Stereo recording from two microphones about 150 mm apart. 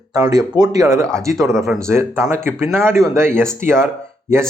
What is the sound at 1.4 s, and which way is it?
Speech, centre (ahead or behind).